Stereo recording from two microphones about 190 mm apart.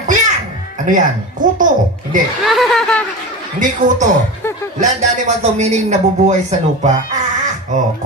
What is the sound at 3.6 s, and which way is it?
A man's voice, 40° right (ahead or behind).